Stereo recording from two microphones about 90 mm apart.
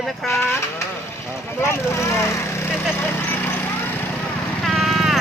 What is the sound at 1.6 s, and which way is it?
Vehicle, 30° left (ahead or behind).